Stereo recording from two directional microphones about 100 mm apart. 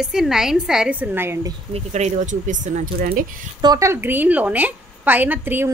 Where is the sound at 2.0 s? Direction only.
90° right.